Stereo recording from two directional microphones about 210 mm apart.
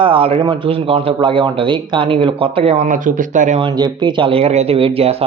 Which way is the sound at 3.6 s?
20° right (ahead or behind).